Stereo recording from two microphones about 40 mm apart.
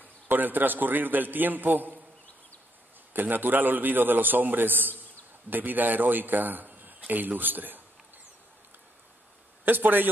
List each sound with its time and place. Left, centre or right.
0.3 s a man's voice: right
3.1 s a man's voice: right
9.7 s a man's voice: right